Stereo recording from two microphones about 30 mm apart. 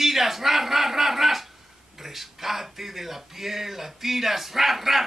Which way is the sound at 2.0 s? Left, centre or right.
Centre.